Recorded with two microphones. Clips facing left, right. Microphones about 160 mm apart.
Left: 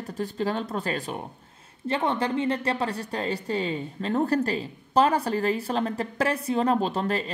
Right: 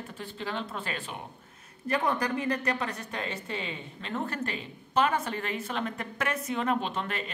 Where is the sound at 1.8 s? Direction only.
25° left (ahead or behind).